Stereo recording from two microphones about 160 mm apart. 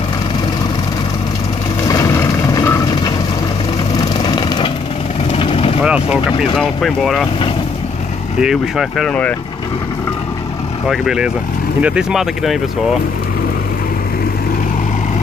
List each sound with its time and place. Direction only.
1.9 s vehicle: 20° left (ahead or behind)
5.8 s vehicle: 5° right (ahead or behind)
6.5 s speech: centre (ahead or behind)
8.4 s speech: 5° right (ahead or behind)
10.9 s speech: 5° right (ahead or behind)